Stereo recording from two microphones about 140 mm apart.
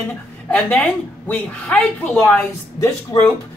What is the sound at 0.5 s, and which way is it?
A woman's voice, 10° left (ahead or behind).